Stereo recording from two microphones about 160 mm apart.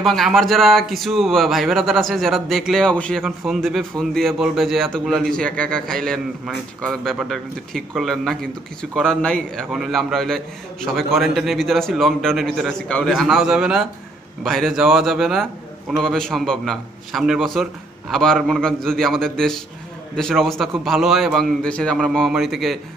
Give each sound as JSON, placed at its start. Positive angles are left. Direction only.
{"t": 0.0, "sound": "speech", "side_deg": 0}